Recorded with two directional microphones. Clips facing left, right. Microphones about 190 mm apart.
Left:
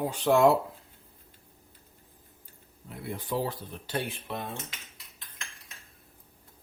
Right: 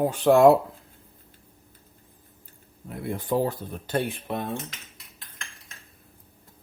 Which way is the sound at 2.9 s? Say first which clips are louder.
Right 6 dB; 50° right (ahead or behind).